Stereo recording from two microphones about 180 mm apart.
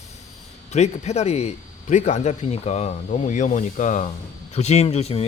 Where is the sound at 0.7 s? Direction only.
40° left (ahead or behind).